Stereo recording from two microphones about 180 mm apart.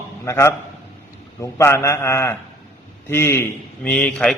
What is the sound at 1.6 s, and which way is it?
A man's voice, 15° left (ahead or behind).